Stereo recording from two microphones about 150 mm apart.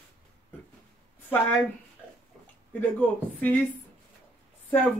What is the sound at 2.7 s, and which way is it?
Speech, 10° left (ahead or behind).